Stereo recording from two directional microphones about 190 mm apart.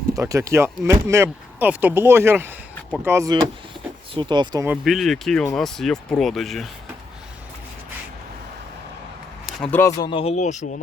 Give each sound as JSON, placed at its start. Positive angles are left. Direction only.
{"t": 0.1, "sound": "speech", "side_deg": -15}
{"t": 4.1, "sound": "speech", "side_deg": -25}
{"t": 4.8, "sound": "speech", "side_deg": 0}
{"t": 9.6, "sound": "speech", "side_deg": 10}